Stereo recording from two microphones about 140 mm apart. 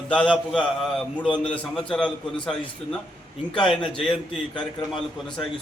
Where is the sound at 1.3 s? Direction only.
35° left (ahead or behind).